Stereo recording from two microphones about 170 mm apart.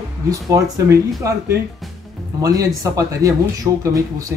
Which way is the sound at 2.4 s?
20° right (ahead or behind).